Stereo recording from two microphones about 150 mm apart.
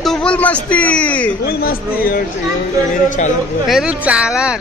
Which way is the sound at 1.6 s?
75° left (ahead or behind).